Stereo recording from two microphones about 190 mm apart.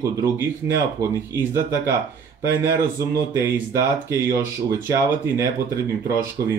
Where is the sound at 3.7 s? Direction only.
15° right (ahead or behind).